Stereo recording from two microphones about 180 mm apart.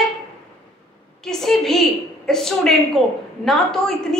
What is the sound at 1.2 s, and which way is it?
A woman's voice, centre (ahead or behind).